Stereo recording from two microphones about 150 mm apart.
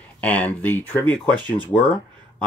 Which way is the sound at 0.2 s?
10° left (ahead or behind).